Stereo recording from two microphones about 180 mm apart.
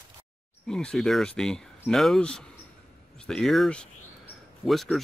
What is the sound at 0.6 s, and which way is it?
Speech, 5° left (ahead or behind).